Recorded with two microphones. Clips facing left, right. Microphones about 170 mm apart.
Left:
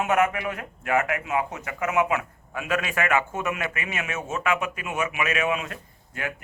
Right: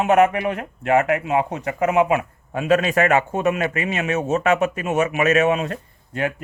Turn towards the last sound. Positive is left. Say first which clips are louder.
# right 9 dB
turn(degrees=-35)  # may be behind; listen again after turning